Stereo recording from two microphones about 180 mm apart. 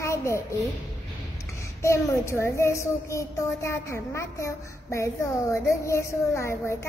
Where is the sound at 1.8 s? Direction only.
15° left (ahead or behind).